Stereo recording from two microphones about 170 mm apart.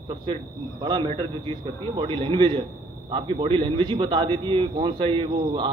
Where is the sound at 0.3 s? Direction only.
30° right (ahead or behind).